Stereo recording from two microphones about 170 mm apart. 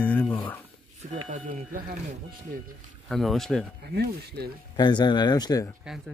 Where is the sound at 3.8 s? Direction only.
70° right (ahead or behind).